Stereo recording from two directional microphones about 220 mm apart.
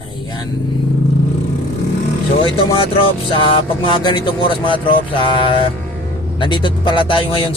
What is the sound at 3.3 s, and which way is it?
Speech, 25° left (ahead or behind).